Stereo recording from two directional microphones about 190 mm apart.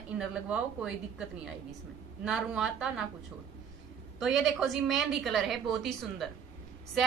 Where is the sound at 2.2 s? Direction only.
5° right (ahead or behind).